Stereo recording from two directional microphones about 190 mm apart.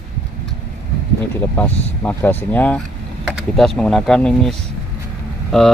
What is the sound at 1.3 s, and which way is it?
Speech, 10° left (ahead or behind).